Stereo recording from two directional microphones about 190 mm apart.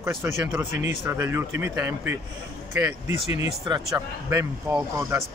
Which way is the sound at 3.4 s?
20° right (ahead or behind).